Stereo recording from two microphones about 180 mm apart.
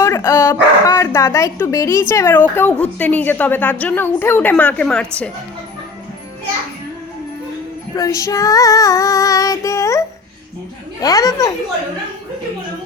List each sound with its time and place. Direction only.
0.0 s speech: 15° left (ahead or behind)
7.9 s speech: 20° left (ahead or behind)
11.0 s speech: 20° left (ahead or behind)